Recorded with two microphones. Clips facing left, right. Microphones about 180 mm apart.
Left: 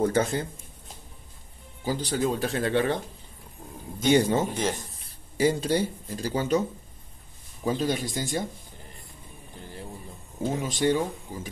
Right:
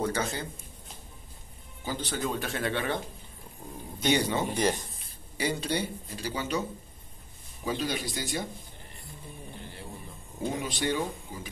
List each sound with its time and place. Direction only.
0.0 s speech: 55° left (ahead or behind)
1.9 s speech: 35° left (ahead or behind)
4.1 s speech: 45° left (ahead or behind)
4.6 s speech: centre (ahead or behind)
5.4 s speech: 45° left (ahead or behind)
7.6 s speech: 40° left (ahead or behind)
10.6 s speech: 40° left (ahead or behind)